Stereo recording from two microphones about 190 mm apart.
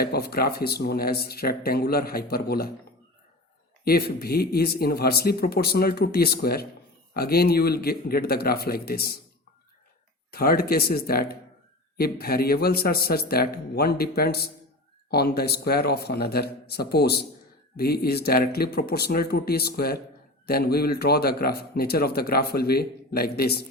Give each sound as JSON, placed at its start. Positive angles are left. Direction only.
{"t": 0.0, "sound": "speech", "side_deg": 55}
{"t": 3.8, "sound": "speech", "side_deg": 55}
{"t": 10.3, "sound": "speech", "side_deg": 50}